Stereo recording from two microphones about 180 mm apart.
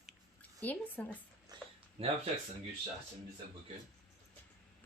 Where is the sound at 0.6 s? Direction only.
10° left (ahead or behind).